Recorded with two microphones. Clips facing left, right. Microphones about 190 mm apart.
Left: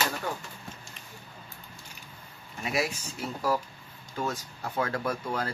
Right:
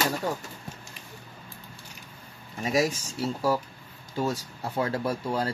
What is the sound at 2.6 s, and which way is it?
Speech, 40° right (ahead or behind).